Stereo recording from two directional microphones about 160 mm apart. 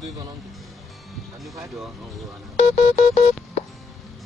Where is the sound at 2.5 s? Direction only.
45° left (ahead or behind).